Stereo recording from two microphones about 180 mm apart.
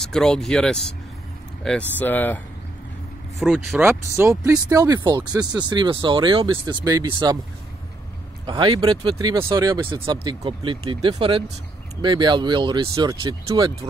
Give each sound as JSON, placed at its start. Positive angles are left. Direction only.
{"t": 0.0, "sound": "speech", "side_deg": 5}
{"t": 3.3, "sound": "speech", "side_deg": 0}
{"t": 8.5, "sound": "speech", "side_deg": -25}